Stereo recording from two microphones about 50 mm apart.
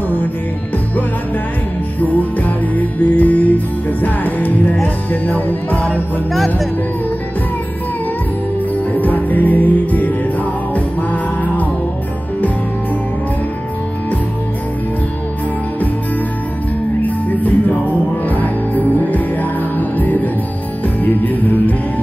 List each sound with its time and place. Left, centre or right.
2.0 s music: left
6.3 s speech: centre
8.9 s music: left
17.0 s music: left